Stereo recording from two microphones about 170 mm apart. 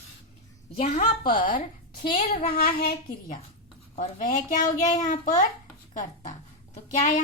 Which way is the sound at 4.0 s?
45° left (ahead or behind).